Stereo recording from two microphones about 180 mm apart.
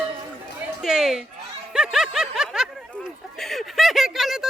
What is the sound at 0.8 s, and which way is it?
Music, centre (ahead or behind).